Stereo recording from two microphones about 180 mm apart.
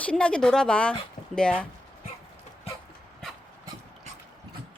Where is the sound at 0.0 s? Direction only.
5° left (ahead or behind).